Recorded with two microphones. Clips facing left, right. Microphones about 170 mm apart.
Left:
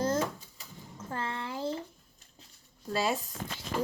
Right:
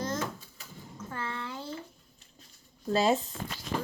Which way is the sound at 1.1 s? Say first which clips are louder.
Left 2 dB; 30° left (ahead or behind).